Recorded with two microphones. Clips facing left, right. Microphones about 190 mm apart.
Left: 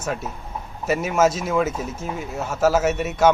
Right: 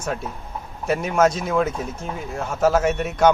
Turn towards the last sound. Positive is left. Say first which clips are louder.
# even
turn(degrees=5)  # may be behind; listen again after turning